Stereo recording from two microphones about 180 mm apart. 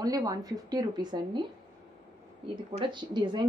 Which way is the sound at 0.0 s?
20° right (ahead or behind).